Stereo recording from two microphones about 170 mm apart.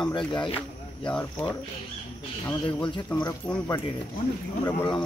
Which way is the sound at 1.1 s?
10° left (ahead or behind).